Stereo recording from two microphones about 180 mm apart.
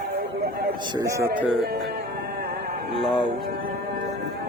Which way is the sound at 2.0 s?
60° right (ahead or behind).